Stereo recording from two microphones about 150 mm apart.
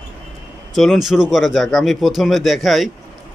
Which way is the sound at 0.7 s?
Centre (ahead or behind).